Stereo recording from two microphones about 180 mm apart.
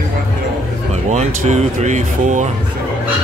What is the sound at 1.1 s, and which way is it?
Speech, 40° right (ahead or behind).